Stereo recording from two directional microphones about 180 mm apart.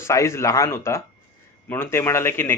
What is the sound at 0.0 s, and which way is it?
Speech, 15° left (ahead or behind).